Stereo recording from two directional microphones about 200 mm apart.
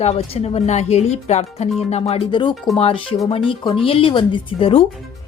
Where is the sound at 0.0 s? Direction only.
30° left (ahead or behind).